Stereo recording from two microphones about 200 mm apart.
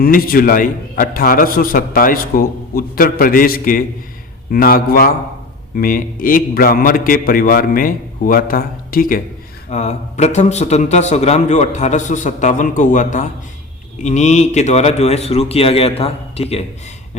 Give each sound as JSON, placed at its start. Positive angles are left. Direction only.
{"t": 0.0, "sound": "a man's voice", "side_deg": 45}
{"t": 9.6, "sound": "speech", "side_deg": 35}